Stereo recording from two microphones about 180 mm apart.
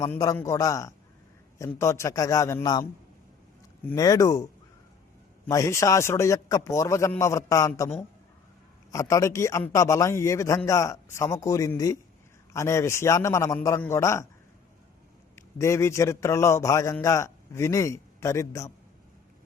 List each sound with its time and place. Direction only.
0.1 s a man's voice: 15° left (ahead or behind)
3.8 s speech: 20° left (ahead or behind)
5.5 s a man's voice: 15° left (ahead or behind)
8.9 s a man's voice: 15° left (ahead or behind)
15.4 s a man's voice: 15° left (ahead or behind)